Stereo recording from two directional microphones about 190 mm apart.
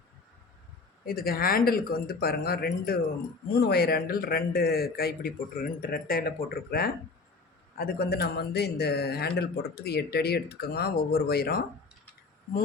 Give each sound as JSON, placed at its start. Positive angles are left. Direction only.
{"t": 1.0, "sound": "a man's voice", "side_deg": 50}